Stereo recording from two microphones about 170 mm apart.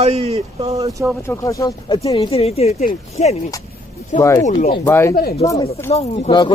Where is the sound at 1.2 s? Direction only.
15° left (ahead or behind).